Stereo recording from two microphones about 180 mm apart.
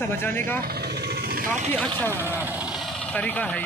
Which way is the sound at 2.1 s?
10° right (ahead or behind).